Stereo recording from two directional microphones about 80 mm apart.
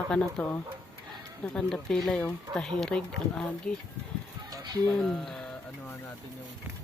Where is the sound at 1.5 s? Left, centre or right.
Centre.